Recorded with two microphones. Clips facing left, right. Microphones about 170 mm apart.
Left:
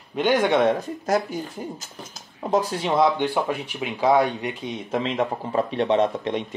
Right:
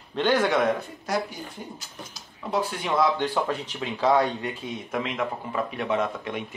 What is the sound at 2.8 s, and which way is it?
Speech, 25° left (ahead or behind).